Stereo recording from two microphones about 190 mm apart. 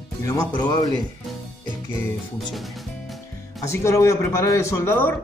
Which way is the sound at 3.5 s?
15° left (ahead or behind).